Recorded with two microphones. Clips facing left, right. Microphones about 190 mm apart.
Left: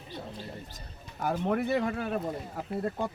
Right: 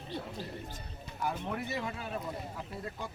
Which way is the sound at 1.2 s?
55° left (ahead or behind).